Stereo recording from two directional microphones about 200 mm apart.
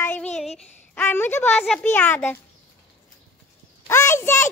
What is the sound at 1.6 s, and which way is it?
Speech, 5° left (ahead or behind).